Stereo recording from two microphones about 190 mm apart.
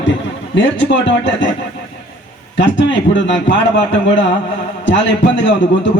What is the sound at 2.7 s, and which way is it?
Speech, 75° left (ahead or behind).